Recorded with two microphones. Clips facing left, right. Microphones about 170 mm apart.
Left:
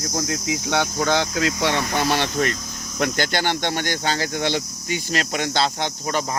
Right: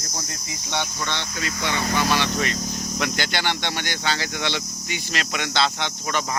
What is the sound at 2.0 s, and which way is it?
Speech, 55° left (ahead or behind).